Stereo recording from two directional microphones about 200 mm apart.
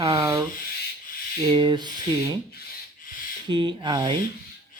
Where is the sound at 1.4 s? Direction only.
25° right (ahead or behind).